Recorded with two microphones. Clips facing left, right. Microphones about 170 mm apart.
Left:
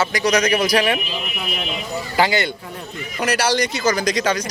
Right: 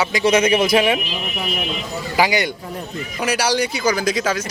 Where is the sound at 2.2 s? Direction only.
15° right (ahead or behind).